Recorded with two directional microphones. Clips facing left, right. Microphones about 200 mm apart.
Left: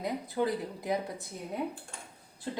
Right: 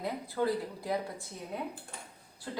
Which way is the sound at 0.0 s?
20° left (ahead or behind).